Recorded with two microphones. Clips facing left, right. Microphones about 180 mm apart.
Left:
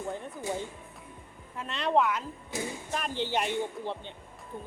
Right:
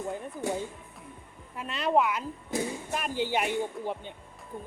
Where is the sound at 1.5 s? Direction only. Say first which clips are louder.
Right 1 dB; 5° right (ahead or behind).